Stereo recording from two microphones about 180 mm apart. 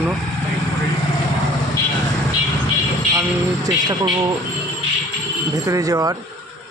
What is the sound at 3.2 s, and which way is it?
Speech, 20° right (ahead or behind).